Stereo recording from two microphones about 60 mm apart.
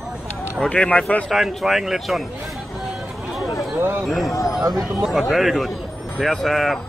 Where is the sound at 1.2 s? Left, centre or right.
Centre.